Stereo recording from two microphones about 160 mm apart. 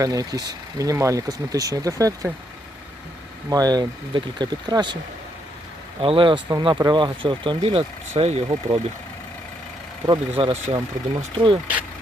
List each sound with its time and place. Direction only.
0.0 s speech: 20° right (ahead or behind)
3.5 s speech: 25° right (ahead or behind)
6.0 s speech: 35° right (ahead or behind)
10.1 s speech: 35° right (ahead or behind)